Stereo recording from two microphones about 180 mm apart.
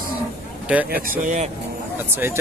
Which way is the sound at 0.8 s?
55° right (ahead or behind).